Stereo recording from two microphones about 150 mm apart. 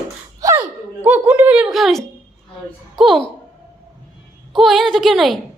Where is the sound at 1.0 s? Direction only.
10° right (ahead or behind).